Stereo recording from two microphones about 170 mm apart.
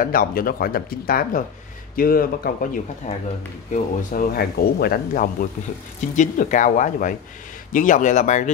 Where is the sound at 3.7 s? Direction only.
50° left (ahead or behind).